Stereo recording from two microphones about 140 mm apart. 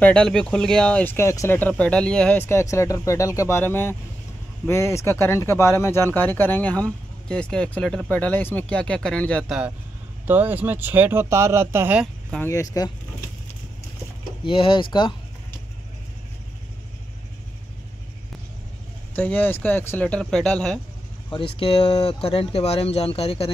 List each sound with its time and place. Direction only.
0.0 s speech: 5° left (ahead or behind)
10.2 s speech: 15° right (ahead or behind)
12.4 s speech: 25° left (ahead or behind)
14.4 s speech: 40° left (ahead or behind)
19.1 s speech: 10° left (ahead or behind)
21.3 s speech: 40° left (ahead or behind)